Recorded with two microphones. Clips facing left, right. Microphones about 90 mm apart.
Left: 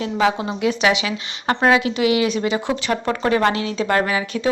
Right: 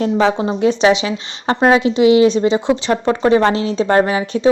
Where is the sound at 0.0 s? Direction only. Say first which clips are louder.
Right 5 dB; 30° right (ahead or behind).